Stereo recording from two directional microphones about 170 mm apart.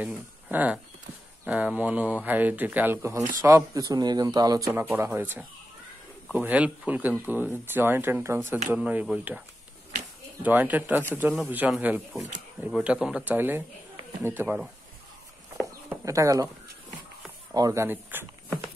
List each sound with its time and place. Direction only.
0.0 s speech: 10° right (ahead or behind)
10.4 s speech: 10° right (ahead or behind)
16.1 s speech: 20° right (ahead or behind)
17.6 s speech: 20° right (ahead or behind)